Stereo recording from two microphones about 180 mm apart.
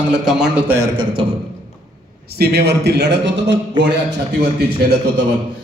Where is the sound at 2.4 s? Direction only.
65° right (ahead or behind).